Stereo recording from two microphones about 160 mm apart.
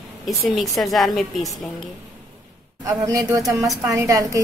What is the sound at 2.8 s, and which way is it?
A woman's voice, 20° right (ahead or behind).